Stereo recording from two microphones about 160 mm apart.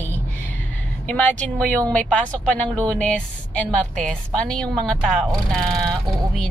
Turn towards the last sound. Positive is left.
turn(degrees=5)  # may be behind; listen again after turning